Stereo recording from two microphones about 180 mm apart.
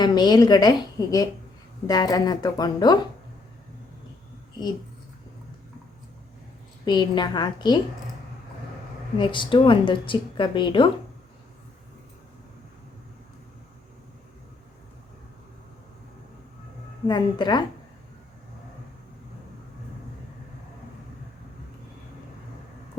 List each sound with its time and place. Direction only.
0.0 s a woman's voice: 25° left (ahead or behind)
6.8 s a woman's voice: 25° left (ahead or behind)
9.1 s a woman's voice: 25° left (ahead or behind)
17.1 s a woman's voice: 25° left (ahead or behind)